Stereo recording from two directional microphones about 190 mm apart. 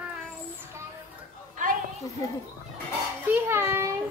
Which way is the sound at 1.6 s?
40° right (ahead or behind).